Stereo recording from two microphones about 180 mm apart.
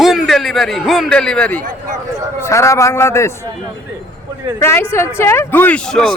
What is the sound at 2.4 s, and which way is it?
Speech, 15° left (ahead or behind).